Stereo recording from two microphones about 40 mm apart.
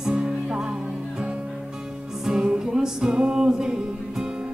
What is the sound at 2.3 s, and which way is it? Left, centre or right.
Music, centre.